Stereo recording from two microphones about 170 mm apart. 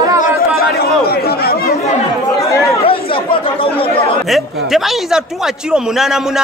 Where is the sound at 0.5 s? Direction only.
65° left (ahead or behind).